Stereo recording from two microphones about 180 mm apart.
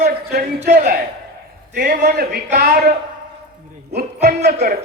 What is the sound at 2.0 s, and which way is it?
Speech, 60° right (ahead or behind).